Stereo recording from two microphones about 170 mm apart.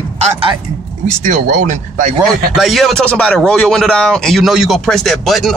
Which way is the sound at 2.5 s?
Centre (ahead or behind).